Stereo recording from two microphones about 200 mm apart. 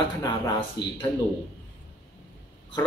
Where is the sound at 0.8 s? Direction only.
60° left (ahead or behind).